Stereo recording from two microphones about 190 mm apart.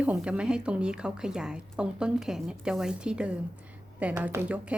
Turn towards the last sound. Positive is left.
turn(degrees=-10)  # may be behind; listen again after turning